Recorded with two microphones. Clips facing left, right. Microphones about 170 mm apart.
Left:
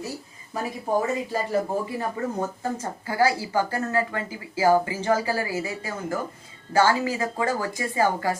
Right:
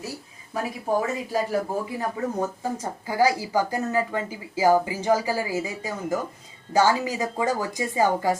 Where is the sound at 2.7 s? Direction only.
15° right (ahead or behind).